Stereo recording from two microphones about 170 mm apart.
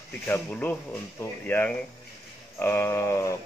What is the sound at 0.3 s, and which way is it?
A man's voice, 10° left (ahead or behind).